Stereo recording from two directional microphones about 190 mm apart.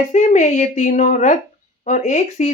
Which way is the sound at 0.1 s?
40° left (ahead or behind).